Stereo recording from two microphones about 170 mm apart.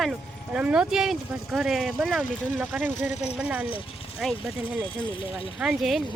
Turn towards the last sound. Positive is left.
turn(degrees=0)  # may be behind; listen again after turning